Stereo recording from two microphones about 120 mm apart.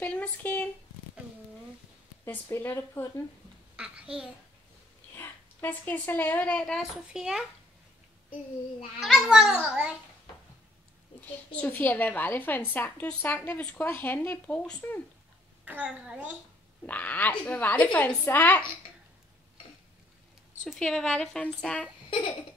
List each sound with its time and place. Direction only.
0.0 s a woman's voice: 10° left (ahead or behind)
2.2 s speech: 20° left (ahead or behind)
3.7 s a child's voice: 10° right (ahead or behind)
5.1 s speech: 15° left (ahead or behind)
7.1 s a child's voice: 5° right (ahead or behind)
9.0 s a child's voice: centre (ahead or behind)
11.1 s a woman's voice: 15° left (ahead or behind)
15.6 s a child's voice: 10° right (ahead or behind)
16.8 s a woman's voice: 15° left (ahead or behind)
20.6 s a child's voice: 5° left (ahead or behind)